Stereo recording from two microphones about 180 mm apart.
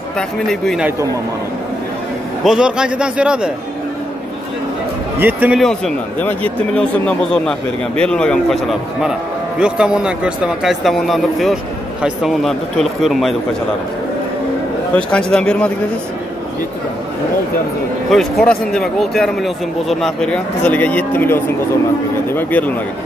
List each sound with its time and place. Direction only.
0.5 s speech: centre (ahead or behind)
2.4 s speech: 5° right (ahead or behind)
5.2 s speech: 10° right (ahead or behind)
5.6 s speech: 5° left (ahead or behind)
15.0 s speech: 5° left (ahead or behind)
18.1 s speech: 5° left (ahead or behind)